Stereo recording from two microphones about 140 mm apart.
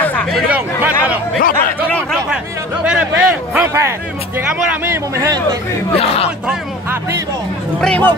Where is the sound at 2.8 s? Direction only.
10° right (ahead or behind).